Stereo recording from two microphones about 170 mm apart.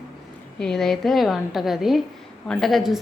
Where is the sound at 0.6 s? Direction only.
5° left (ahead or behind).